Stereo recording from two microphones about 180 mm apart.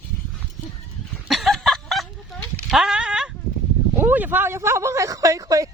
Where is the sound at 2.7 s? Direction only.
5° right (ahead or behind).